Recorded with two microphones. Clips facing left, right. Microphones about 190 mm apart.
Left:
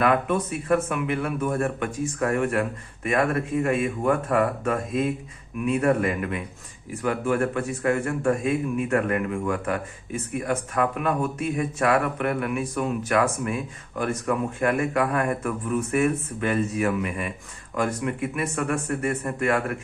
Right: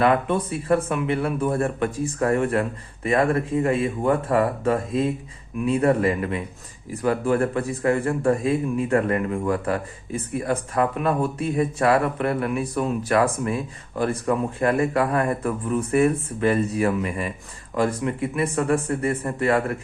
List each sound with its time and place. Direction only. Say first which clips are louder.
0.0 s a man's voice: right 2 dB; 30° right (ahead or behind)